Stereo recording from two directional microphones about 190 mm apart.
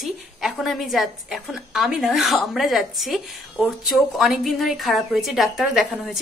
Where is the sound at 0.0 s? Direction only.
Centre (ahead or behind).